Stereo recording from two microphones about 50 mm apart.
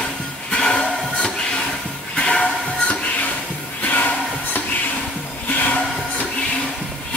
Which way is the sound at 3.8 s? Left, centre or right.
Left.